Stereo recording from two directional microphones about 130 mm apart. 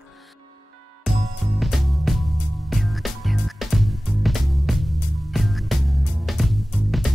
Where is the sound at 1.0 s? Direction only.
Centre (ahead or behind).